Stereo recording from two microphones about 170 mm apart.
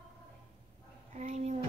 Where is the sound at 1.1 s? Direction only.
45° right (ahead or behind).